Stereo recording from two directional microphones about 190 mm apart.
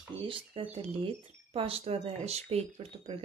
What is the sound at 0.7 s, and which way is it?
Speech, 30° right (ahead or behind).